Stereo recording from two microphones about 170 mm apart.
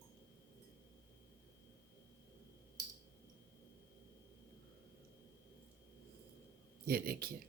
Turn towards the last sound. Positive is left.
turn(degrees=-60)  # may be behind; listen again after turning